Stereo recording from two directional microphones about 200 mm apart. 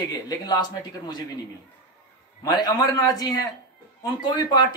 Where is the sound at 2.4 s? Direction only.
20° left (ahead or behind).